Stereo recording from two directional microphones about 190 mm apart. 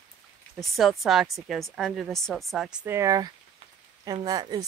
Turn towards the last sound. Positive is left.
turn(degrees=-20)  # may be behind; listen again after turning